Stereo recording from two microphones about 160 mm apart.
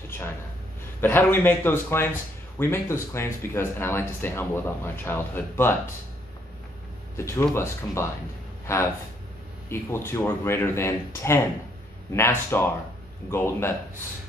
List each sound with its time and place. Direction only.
1.0 s speech: 10° left (ahead or behind)
7.2 s speech: 15° left (ahead or behind)
9.7 s speech: 15° left (ahead or behind)